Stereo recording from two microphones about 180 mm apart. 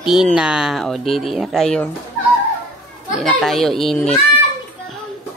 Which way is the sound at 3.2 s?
Centre (ahead or behind).